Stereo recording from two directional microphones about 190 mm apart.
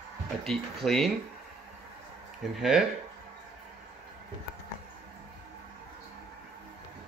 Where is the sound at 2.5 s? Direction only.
Centre (ahead or behind).